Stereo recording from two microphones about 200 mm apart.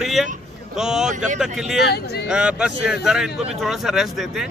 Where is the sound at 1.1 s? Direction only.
40° right (ahead or behind).